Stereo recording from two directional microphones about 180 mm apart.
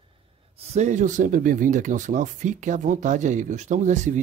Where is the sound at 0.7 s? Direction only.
45° right (ahead or behind).